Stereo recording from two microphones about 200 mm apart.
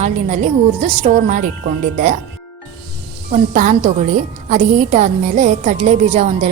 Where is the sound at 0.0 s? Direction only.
35° right (ahead or behind).